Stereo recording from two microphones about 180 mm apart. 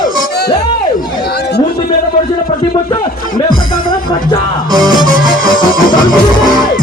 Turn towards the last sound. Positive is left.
turn(degrees=50)  # may be behind; listen again after turning